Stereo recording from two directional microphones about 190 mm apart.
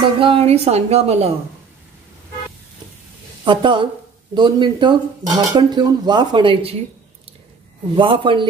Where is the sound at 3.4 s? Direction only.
25° right (ahead or behind).